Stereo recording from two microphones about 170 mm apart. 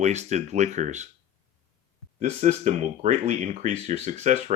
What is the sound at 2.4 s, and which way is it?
Speech, 40° right (ahead or behind).